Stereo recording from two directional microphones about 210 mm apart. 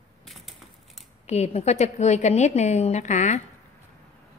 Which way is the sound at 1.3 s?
30° left (ahead or behind).